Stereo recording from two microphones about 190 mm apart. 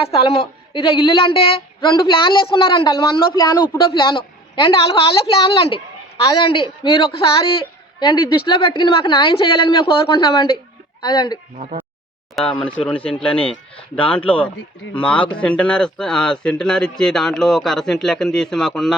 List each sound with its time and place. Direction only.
0.1 s a woman's voice: 30° left (ahead or behind)
11.5 s speech: 40° right (ahead or behind)
12.4 s speech: 5° left (ahead or behind)